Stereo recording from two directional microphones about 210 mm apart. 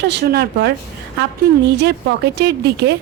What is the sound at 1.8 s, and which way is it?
A woman's voice, 55° right (ahead or behind).